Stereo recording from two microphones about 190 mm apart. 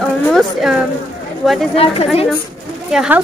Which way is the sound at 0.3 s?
Centre (ahead or behind).